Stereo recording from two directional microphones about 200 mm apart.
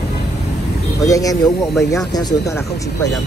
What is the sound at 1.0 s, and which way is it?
Speech, 15° left (ahead or behind).